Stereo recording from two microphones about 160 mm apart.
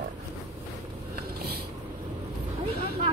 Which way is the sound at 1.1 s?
75° right (ahead or behind).